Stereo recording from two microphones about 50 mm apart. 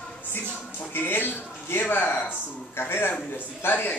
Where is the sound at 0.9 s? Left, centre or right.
Left.